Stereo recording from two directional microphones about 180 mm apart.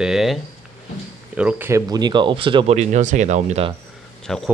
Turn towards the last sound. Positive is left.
turn(degrees=5)  # may be behind; listen again after turning